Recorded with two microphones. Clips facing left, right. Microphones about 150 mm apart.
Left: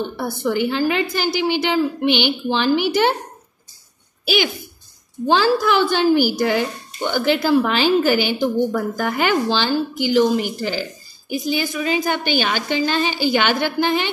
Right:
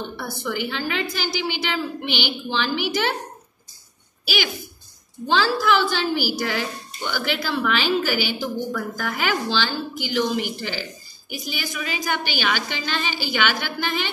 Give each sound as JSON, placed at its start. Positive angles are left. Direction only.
{"t": 0.2, "sound": "a woman's voice", "side_deg": 50}
{"t": 5.3, "sound": "a woman's voice", "side_deg": 50}